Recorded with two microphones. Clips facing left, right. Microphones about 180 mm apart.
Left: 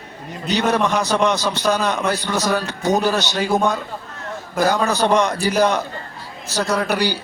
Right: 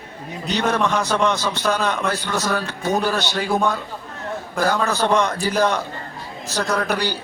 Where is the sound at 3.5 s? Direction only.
40° left (ahead or behind).